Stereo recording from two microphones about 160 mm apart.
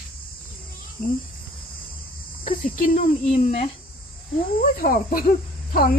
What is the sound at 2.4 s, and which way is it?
Speech, 60° left (ahead or behind).